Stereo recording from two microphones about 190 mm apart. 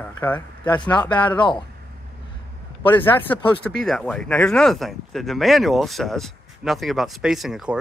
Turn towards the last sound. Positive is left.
turn(degrees=-5)  # may be behind; listen again after turning